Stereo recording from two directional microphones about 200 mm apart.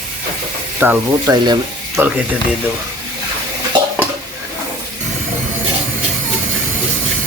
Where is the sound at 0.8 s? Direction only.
10° right (ahead or behind).